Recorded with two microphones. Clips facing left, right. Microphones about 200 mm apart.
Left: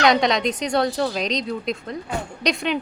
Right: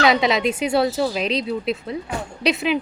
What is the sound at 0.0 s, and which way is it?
A woman's voice, 5° right (ahead or behind).